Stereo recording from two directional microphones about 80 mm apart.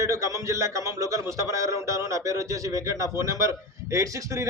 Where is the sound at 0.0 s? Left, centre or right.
Right.